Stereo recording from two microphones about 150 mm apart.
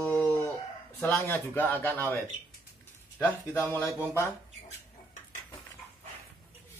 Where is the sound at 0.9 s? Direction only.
15° left (ahead or behind).